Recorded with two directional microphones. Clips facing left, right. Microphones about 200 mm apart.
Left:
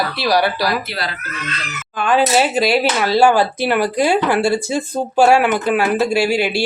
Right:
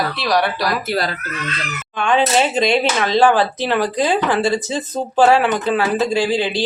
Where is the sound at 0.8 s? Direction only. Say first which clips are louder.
Right 5 dB; 45° right (ahead or behind).